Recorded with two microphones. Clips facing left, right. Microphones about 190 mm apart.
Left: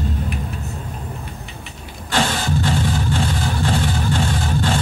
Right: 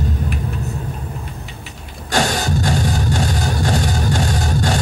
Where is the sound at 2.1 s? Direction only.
40° right (ahead or behind).